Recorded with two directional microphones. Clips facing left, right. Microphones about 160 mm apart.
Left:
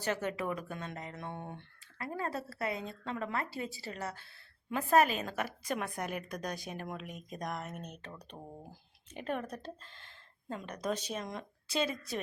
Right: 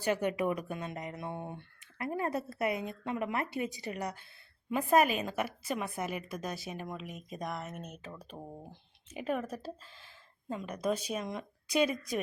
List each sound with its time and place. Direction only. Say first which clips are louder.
0.0 s speech: right 4 dB; 15° right (ahead or behind)
11.7 s speech: right 4 dB; 15° right (ahead or behind)